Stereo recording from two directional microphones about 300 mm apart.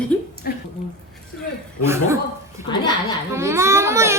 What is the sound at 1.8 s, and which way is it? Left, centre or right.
Speech, centre.